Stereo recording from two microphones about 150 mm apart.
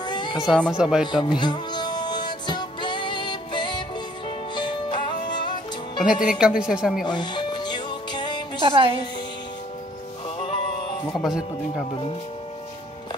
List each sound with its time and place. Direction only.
0.0 s a sound: 30° left (ahead or behind)
0.5 s speech: 5° left (ahead or behind)
0.7 s speech: 5° right (ahead or behind)
1.0 s music: 30° left (ahead or behind)
6.2 s speech: 5° right (ahead or behind)
7.1 s music: 30° left (ahead or behind)
8.6 s a woman's voice: 35° right (ahead or behind)
10.4 s music: 30° left (ahead or behind)